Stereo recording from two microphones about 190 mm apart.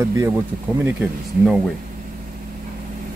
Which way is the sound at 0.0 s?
15° right (ahead or behind).